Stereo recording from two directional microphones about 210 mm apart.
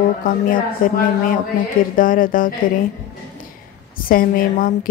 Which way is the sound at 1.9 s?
40° left (ahead or behind).